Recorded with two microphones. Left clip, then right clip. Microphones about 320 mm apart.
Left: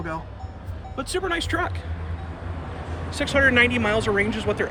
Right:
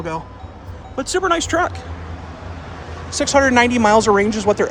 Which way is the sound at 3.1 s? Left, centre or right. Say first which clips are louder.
Right 5 dB; right.